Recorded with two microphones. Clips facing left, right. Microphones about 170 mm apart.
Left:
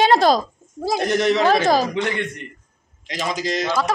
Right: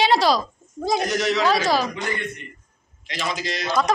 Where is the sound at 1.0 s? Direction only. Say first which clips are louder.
Left 6 dB; 55° left (ahead or behind).